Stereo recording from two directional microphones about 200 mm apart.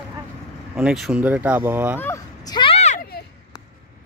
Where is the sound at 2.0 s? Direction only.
15° left (ahead or behind); by 3.0 s 35° left (ahead or behind).